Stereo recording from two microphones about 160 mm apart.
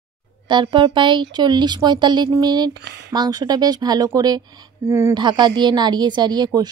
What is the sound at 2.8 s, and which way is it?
Speech, 90° right.